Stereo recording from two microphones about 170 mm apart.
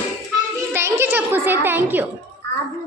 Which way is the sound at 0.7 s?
15° right (ahead or behind).